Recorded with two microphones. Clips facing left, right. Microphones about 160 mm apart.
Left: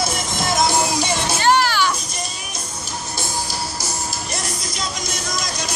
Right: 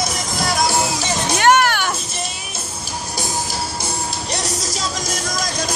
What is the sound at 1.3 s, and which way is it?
Music, 65° right (ahead or behind).